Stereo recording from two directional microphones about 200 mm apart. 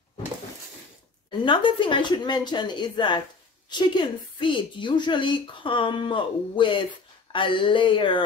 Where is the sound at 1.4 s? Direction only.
25° left (ahead or behind).